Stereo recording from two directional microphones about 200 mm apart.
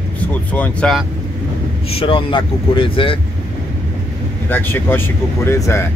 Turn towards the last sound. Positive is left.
turn(degrees=15)  # may be behind; listen again after turning